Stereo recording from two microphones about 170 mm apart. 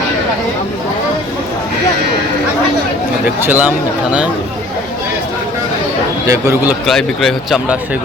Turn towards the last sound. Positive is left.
turn(degrees=0)  # may be behind; listen again after turning